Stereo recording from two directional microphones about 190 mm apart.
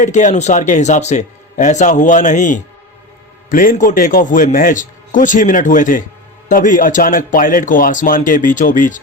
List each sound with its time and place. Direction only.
0.0 s a man's voice: 40° left (ahead or behind)